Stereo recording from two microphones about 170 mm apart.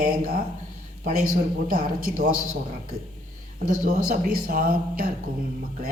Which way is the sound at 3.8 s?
60° right (ahead or behind).